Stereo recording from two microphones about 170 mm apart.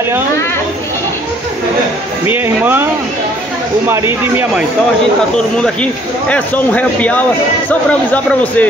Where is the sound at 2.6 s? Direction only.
10° right (ahead or behind).